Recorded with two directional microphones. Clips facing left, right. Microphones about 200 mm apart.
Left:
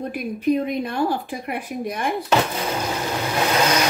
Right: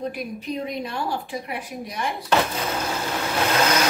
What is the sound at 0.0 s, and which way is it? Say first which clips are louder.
A woman's voice: left 6 dB; 55° left (ahead or behind).